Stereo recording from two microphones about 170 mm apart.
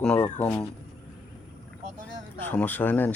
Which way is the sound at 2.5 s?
10° left (ahead or behind).